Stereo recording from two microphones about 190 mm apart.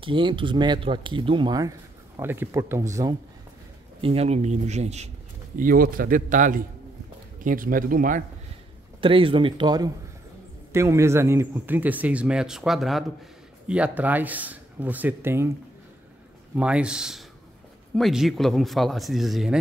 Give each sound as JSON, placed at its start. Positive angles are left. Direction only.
{"t": 0.0, "sound": "speech", "side_deg": -25}
{"t": 4.0, "sound": "speech", "side_deg": -30}
{"t": 5.6, "sound": "a man's voice", "side_deg": -50}
{"t": 9.0, "sound": "speech", "side_deg": -30}
{"t": 16.5, "sound": "speech", "side_deg": -5}